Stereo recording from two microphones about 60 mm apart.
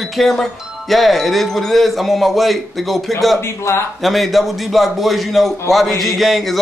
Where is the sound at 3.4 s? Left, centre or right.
Left.